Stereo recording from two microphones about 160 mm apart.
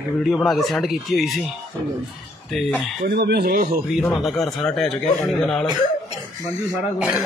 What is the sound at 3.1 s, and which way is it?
Speech, 90° right.